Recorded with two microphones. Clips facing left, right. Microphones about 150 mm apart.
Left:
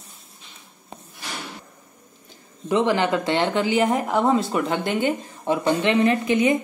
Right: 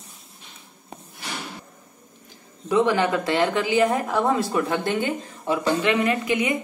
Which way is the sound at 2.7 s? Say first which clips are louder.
Even; 25° left (ahead or behind).